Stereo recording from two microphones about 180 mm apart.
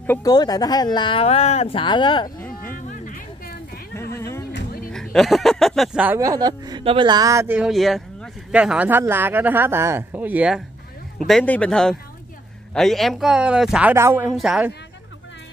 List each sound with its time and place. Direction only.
0.0 s speech: 10° left (ahead or behind)
0.3 s speech: 20° left (ahead or behind)
3.1 s a sound: 50° left (ahead or behind)
4.1 s a sound: 15° left (ahead or behind)
4.5 s music: 60° left (ahead or behind)
4.9 s speech: centre (ahead or behind)